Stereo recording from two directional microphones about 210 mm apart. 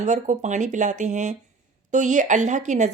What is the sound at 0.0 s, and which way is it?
A woman's voice, 35° right (ahead or behind).